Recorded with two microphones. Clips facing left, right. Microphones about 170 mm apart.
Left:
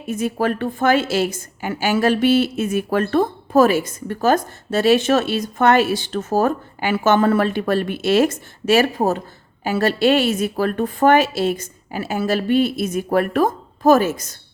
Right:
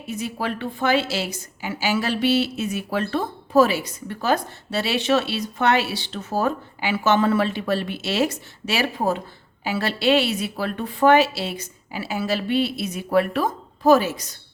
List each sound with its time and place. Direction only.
0.1 s a woman's voice: 50° left (ahead or behind)